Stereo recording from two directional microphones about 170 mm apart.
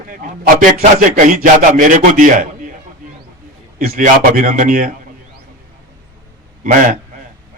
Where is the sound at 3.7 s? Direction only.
55° right (ahead or behind).